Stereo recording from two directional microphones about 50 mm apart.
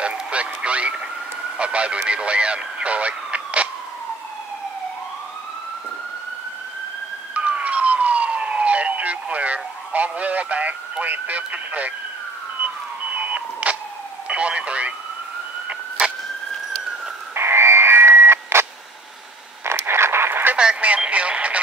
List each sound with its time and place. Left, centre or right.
0.0 s speech: right
7.3 s police car: right
13.1 s vehicle: right
14.2 s radio: right
17.3 s radio: right
19.6 s a sound: right
20.5 s radio: right